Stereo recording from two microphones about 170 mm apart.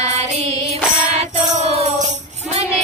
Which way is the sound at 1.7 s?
35° right (ahead or behind).